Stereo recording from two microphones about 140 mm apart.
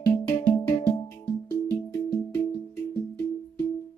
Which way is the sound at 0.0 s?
25° left (ahead or behind).